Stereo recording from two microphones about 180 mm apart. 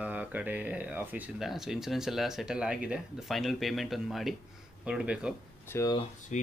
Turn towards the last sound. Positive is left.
turn(degrees=40)  # may be behind; listen again after turning